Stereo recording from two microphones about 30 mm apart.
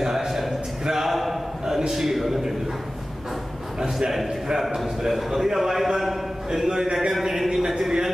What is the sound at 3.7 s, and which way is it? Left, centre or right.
A man's voice, centre.